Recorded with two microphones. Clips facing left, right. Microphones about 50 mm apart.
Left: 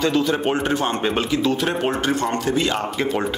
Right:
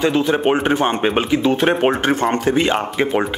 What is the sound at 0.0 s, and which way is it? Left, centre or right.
Speech, right.